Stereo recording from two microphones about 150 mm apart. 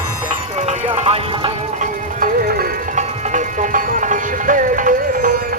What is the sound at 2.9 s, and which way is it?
Music, 55° right (ahead or behind).